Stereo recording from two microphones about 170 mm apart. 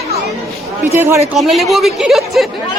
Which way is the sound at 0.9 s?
15° right (ahead or behind).